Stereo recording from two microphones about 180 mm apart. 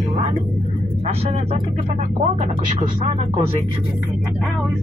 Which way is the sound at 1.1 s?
35° right (ahead or behind).